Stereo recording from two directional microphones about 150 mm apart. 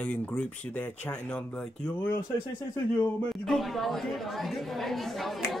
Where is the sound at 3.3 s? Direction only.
Centre (ahead or behind).